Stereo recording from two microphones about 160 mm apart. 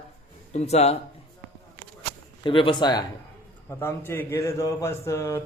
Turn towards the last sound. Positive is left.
turn(degrees=15)  # may be behind; listen again after turning